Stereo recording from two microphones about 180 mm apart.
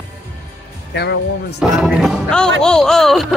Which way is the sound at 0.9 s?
70° left (ahead or behind).